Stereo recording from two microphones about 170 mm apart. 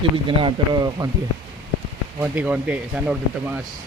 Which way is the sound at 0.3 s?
25° right (ahead or behind).